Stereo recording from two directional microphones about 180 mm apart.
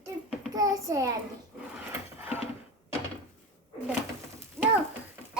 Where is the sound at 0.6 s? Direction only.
20° right (ahead or behind).